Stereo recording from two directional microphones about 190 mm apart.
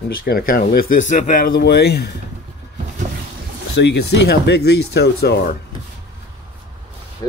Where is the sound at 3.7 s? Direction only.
65° left (ahead or behind).